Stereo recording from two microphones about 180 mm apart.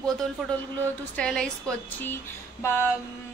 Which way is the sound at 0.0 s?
5° left (ahead or behind).